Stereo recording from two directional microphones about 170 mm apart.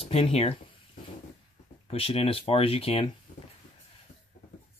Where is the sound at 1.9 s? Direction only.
35° left (ahead or behind).